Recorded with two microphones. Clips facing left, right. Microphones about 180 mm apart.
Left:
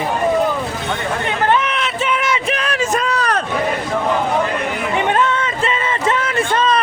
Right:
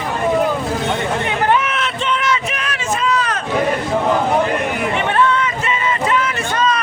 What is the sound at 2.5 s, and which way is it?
Vehicle, 35° left (ahead or behind).